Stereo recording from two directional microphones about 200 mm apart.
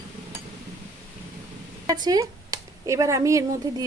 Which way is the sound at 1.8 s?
20° right (ahead or behind).